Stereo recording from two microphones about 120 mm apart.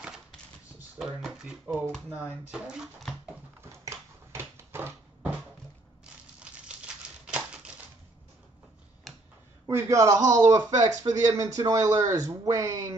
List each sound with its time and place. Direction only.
0.9 s speech: 5° right (ahead or behind)
2.6 s a child's voice: 5° right (ahead or behind)
3.8 s a sound: 25° right (ahead or behind)
7.2 s typewriter: 10° right (ahead or behind)
9.1 s tick-tock: centre (ahead or behind)
9.7 s a man's voice: 25° right (ahead or behind)